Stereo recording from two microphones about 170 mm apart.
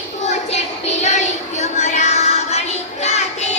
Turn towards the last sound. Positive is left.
turn(degrees=40)  # may be behind; listen again after turning